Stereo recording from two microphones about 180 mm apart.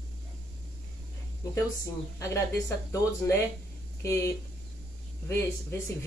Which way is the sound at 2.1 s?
15° left (ahead or behind).